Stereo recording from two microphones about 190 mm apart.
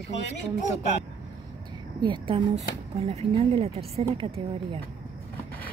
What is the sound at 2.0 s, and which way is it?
A woman's voice, 25° right (ahead or behind).